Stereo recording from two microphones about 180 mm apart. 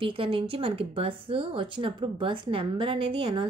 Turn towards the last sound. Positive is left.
turn(degrees=-30)  # may be behind; listen again after turning